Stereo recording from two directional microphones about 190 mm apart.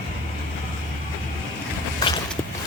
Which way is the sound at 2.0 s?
20° left (ahead or behind).